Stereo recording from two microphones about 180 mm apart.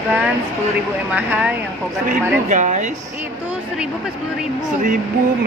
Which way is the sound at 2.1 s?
45° right (ahead or behind).